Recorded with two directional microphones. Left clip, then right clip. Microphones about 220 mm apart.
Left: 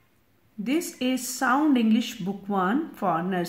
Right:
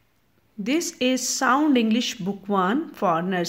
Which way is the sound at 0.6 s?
35° right (ahead or behind).